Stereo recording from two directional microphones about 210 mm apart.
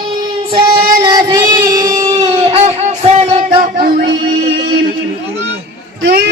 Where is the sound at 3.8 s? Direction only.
45° right (ahead or behind).